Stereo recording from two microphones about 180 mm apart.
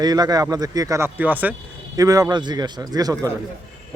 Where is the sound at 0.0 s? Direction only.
20° right (ahead or behind).